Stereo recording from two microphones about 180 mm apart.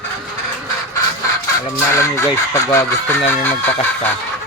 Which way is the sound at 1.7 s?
15° left (ahead or behind).